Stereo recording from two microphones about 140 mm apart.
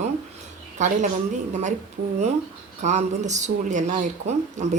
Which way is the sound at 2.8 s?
55° right (ahead or behind).